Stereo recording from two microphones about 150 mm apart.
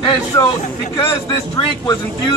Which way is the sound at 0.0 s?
30° left (ahead or behind).